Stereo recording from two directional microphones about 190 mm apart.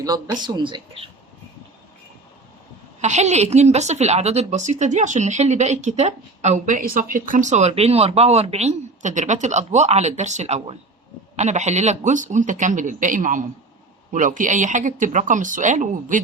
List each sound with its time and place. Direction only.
0.0 s speech: 20° right (ahead or behind)
3.0 s a woman's voice: 35° right (ahead or behind)